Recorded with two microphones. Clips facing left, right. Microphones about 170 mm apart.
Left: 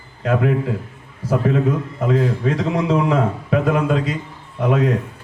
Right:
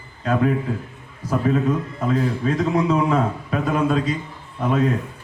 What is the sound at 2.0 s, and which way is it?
A man's voice, 85° left.